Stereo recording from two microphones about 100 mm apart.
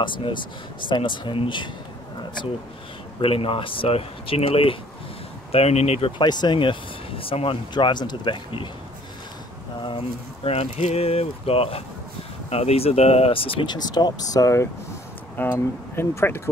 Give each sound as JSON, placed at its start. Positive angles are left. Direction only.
{"t": 0.0, "sound": "speech", "side_deg": 55}
{"t": 3.2, "sound": "speech", "side_deg": 65}
{"t": 5.5, "sound": "speech", "side_deg": 90}
{"t": 6.2, "sound": "speech", "side_deg": 45}
{"t": 9.8, "sound": "speech", "side_deg": 70}
{"t": 12.4, "sound": "speech", "side_deg": 90}
{"t": 13.7, "sound": "speech", "side_deg": 45}
{"t": 15.4, "sound": "speech", "side_deg": 20}